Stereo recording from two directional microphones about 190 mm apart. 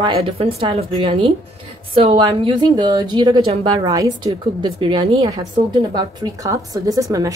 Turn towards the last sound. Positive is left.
turn(degrees=-20)  # may be behind; listen again after turning